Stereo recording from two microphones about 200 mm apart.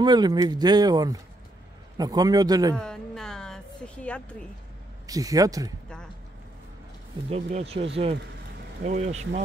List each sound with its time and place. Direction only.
0.0 s speech: 20° right (ahead or behind)
2.7 s a sound: 5° left (ahead or behind)
5.0 s speech: 20° right (ahead or behind)
7.2 s speech: 30° right (ahead or behind)
8.8 s speech: 35° right (ahead or behind)